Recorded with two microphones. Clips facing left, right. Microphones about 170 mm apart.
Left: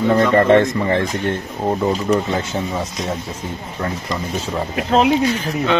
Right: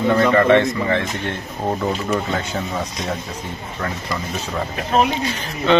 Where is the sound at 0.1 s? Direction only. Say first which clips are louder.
Left 1 dB; 30° left (ahead or behind).